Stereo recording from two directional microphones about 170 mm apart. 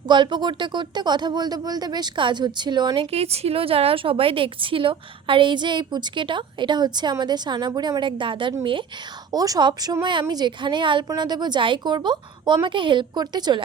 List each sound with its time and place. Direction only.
0.1 s speech: 25° right (ahead or behind)